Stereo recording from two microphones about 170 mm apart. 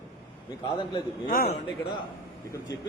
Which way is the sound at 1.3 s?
60° left (ahead or behind).